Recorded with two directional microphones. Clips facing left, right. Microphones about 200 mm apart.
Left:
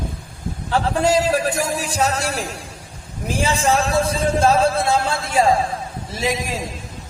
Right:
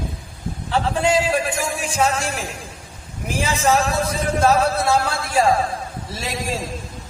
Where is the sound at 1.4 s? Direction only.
40° left (ahead or behind).